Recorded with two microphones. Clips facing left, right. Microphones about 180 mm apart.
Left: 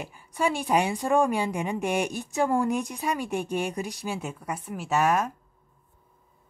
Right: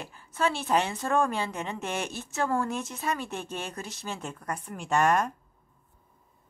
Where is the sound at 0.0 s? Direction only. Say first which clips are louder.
Left 2 dB; 15° left (ahead or behind).